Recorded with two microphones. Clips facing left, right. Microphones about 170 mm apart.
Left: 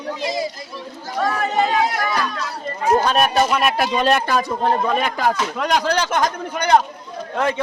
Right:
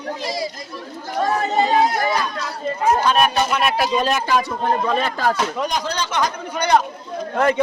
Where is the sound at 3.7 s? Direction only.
55° left (ahead or behind).